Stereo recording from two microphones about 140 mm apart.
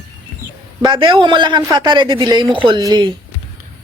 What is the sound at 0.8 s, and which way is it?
Speech, 35° right (ahead or behind).